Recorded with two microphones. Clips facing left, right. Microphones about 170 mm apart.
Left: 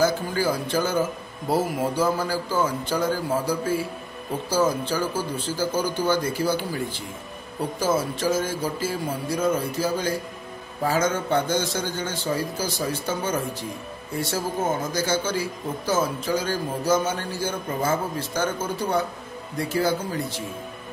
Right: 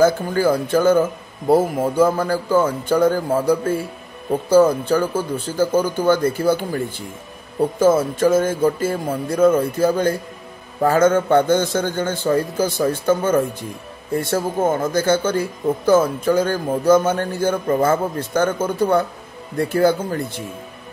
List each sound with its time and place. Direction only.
0.0 s speech: 55° right (ahead or behind)
7.8 s speech: 55° right (ahead or behind)